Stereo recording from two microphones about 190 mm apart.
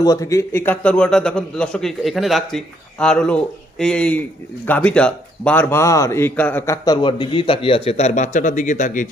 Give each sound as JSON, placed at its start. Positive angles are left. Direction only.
{"t": 0.0, "sound": "a man's voice", "side_deg": 20}